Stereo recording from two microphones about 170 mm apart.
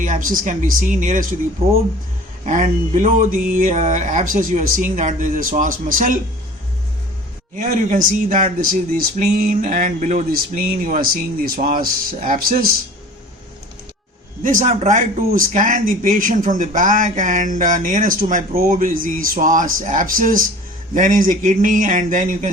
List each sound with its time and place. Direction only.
0.0 s speech: 55° right (ahead or behind)
2.4 s speech: 45° right (ahead or behind)
7.5 s speech: 50° right (ahead or behind)
14.4 s speech: 50° right (ahead or behind)